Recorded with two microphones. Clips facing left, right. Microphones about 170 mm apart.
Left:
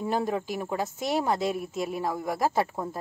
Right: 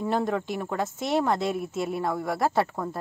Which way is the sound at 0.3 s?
10° left (ahead or behind).